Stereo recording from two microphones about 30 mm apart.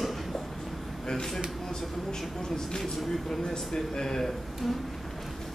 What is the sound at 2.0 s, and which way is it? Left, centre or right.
Speech, left.